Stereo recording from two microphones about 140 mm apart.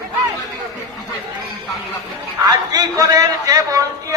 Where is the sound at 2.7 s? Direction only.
25° right (ahead or behind).